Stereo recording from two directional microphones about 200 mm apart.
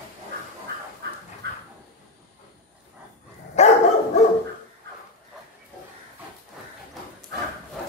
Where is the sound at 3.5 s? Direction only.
35° left (ahead or behind).